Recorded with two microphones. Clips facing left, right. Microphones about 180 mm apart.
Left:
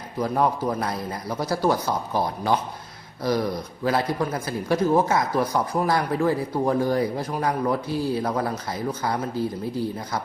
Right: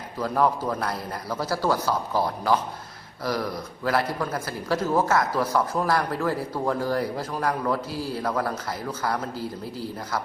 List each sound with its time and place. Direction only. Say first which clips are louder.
0.2 s speech: left 1 dB; 15° left (ahead or behind)